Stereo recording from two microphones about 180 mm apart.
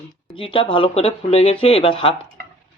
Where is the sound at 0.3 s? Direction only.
30° left (ahead or behind).